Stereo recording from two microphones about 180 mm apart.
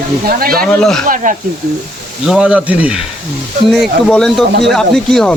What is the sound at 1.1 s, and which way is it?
Speech, 45° right (ahead or behind).